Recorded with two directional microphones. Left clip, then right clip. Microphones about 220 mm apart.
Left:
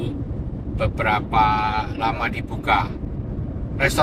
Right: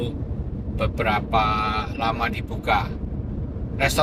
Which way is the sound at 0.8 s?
15° right (ahead or behind).